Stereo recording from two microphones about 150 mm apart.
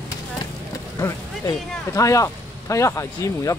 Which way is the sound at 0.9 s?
20° left (ahead or behind).